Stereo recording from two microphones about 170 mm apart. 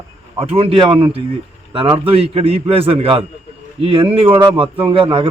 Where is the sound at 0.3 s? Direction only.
35° right (ahead or behind).